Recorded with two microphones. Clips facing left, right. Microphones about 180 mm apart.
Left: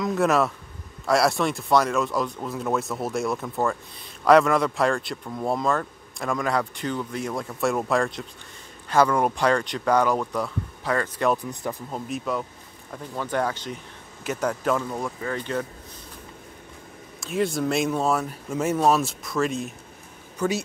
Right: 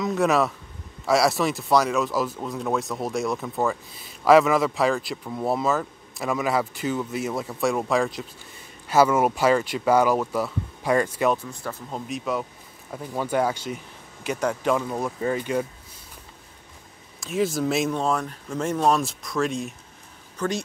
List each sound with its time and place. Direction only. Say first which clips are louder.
0.0 s speech: even; centre (ahead or behind)
11.3 s speech: left 3 dB; 15° left (ahead or behind)
11.9 s speech: right 2 dB; centre (ahead or behind)
12.9 s speech: right 3 dB; 10° right (ahead or behind)
17.2 s speech: right 1 dB; centre (ahead or behind)